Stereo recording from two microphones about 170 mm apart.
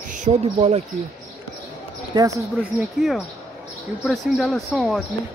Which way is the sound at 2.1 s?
20° right (ahead or behind).